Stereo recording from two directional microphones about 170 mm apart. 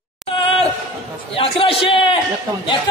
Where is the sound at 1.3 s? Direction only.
30° left (ahead or behind).